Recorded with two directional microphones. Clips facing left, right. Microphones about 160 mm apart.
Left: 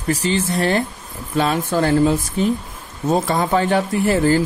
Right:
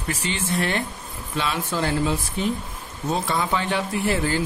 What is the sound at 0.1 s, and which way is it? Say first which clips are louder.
Speech: left 7 dB; 40° left (ahead or behind).